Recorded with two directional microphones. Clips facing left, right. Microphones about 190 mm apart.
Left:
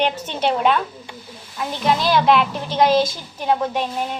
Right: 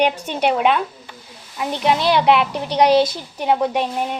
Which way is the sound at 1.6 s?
20° right (ahead or behind).